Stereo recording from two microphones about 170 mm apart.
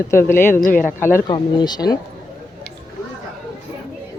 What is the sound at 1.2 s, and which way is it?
Speech, 25° left (ahead or behind).